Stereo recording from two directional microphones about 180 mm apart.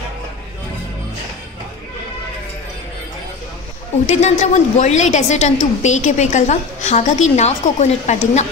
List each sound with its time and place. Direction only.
4.1 s a woman's voice: 40° left (ahead or behind)